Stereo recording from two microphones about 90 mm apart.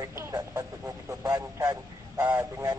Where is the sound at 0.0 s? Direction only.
35° right (ahead or behind).